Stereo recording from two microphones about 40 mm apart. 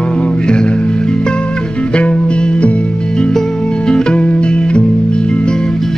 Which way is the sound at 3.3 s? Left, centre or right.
Centre.